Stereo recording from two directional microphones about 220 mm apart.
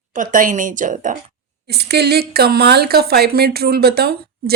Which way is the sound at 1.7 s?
45° right (ahead or behind).